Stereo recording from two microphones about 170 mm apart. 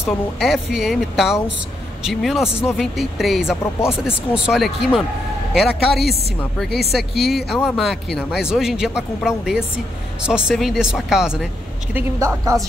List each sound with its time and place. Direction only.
0.4 s speech: centre (ahead or behind)
11.9 s speech: 15° right (ahead or behind)